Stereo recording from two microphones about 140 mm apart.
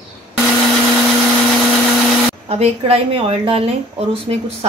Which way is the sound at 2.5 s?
45° right (ahead or behind).